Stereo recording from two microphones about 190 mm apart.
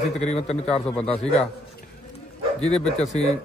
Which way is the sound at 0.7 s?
5° left (ahead or behind).